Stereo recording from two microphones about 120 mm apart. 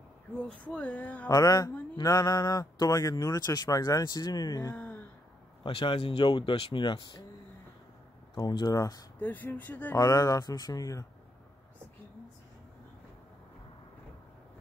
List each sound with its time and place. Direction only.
0.7 s speech: 10° left (ahead or behind)
1.3 s speech: 30° left (ahead or behind)
5.6 s speech: 45° left (ahead or behind)
8.4 s speech: 35° left (ahead or behind)
9.2 s speech: 15° left (ahead or behind)
9.9 s speech: 30° left (ahead or behind)